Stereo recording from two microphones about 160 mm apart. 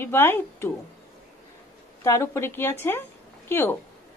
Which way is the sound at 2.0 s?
15° left (ahead or behind).